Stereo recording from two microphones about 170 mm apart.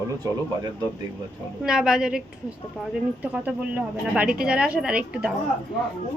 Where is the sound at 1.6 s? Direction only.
5° right (ahead or behind).